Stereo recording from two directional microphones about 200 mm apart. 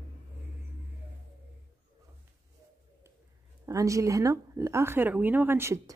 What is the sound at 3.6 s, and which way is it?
A woman's voice, 15° right (ahead or behind).